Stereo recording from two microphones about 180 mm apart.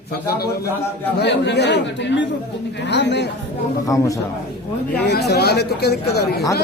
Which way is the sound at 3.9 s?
20° left (ahead or behind).